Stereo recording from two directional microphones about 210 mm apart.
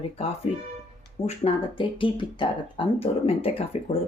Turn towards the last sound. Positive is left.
turn(degrees=25)  # may be behind; listen again after turning